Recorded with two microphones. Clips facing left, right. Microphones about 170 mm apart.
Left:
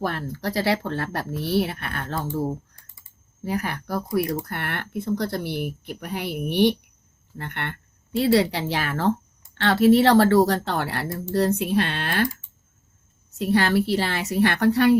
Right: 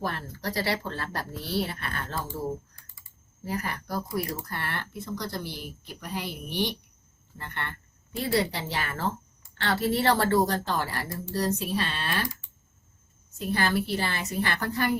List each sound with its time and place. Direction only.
0.0 s speech: 65° left (ahead or behind)
3.4 s speech: 65° left (ahead or behind)
13.4 s speech: 70° left (ahead or behind)